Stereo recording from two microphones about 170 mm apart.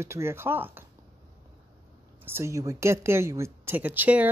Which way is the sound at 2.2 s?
15° right (ahead or behind).